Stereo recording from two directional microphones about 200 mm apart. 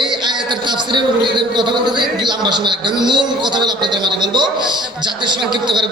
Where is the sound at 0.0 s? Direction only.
20° right (ahead or behind).